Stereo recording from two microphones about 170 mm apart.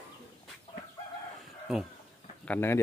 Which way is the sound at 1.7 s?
Centre (ahead or behind).